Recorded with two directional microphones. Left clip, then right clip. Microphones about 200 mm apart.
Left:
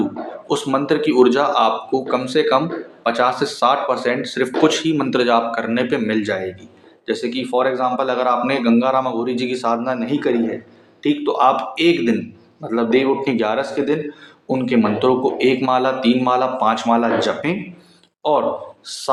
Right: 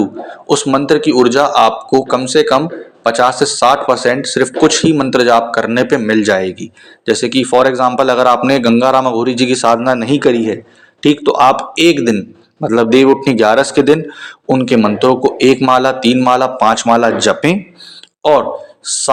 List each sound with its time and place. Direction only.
0.4 s speech: 35° right (ahead or behind)